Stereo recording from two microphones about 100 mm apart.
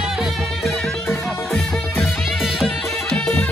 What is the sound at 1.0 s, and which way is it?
Music, 5° left (ahead or behind).